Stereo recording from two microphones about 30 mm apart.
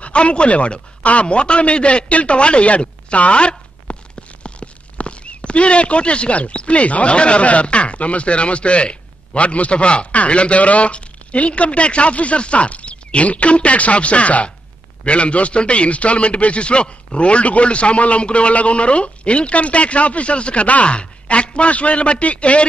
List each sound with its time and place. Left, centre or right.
0.0 s speech: left
1.2 s a man's voice: left